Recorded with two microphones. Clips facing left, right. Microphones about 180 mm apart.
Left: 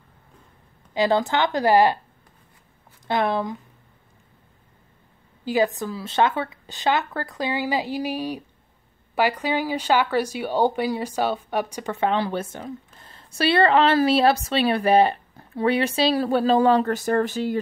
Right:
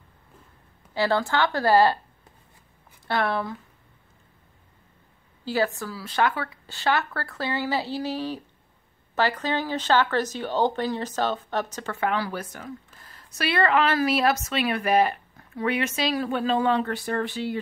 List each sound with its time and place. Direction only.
0.9 s speech: 15° left (ahead or behind)
3.1 s speech: 20° left (ahead or behind)
5.4 s speech: 15° left (ahead or behind); by 17.6 s 45° left (ahead or behind)